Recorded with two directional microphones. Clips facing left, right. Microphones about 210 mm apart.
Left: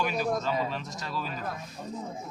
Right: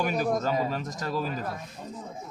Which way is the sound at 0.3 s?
45° right (ahead or behind).